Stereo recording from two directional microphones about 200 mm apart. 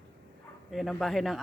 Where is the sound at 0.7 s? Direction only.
Centre (ahead or behind).